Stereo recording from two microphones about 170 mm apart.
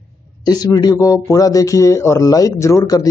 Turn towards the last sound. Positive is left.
turn(degrees=20)  # may be behind; listen again after turning